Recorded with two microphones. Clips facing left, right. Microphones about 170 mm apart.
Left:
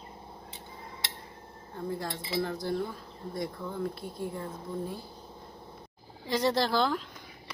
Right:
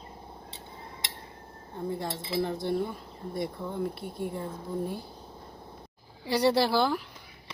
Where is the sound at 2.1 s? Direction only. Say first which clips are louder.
Right 2 dB; centre (ahead or behind).